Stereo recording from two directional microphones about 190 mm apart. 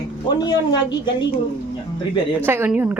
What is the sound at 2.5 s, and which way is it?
Speech, 10° right (ahead or behind).